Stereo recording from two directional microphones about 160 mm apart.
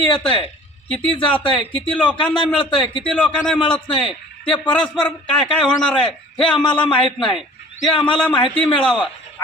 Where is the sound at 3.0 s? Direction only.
5° left (ahead or behind).